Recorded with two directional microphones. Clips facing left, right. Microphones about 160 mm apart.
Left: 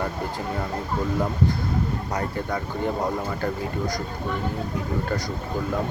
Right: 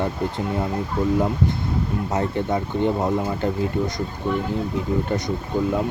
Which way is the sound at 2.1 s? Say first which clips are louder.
Right 8 dB; 25° right (ahead or behind).